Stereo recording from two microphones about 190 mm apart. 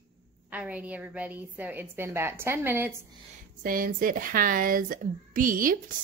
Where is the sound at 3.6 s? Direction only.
45° right (ahead or behind).